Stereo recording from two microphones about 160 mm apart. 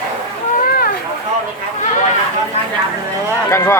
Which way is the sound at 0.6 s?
70° left (ahead or behind).